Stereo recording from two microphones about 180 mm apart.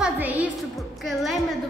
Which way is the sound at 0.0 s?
10° right (ahead or behind).